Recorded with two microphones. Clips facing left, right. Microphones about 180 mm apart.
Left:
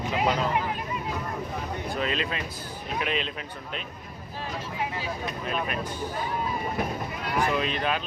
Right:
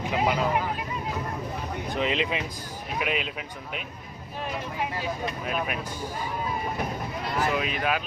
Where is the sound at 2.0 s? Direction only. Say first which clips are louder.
Right 4 dB; 20° right (ahead or behind).